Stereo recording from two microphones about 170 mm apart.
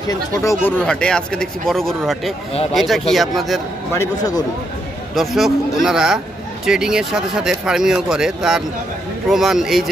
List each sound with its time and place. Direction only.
0.1 s speech: 20° left (ahead or behind)
0.8 s speech: 5° left (ahead or behind)
3.9 s speech: 20° left (ahead or behind)
5.1 s speech: centre (ahead or behind)